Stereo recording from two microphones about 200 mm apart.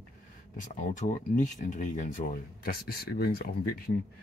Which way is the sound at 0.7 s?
35° left (ahead or behind).